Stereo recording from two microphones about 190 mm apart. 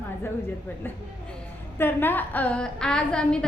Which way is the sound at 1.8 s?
10° left (ahead or behind).